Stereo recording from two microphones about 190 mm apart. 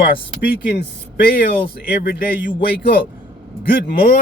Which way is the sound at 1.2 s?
50° left (ahead or behind).